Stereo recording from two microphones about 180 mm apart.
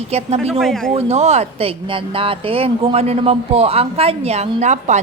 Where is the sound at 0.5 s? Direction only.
Centre (ahead or behind).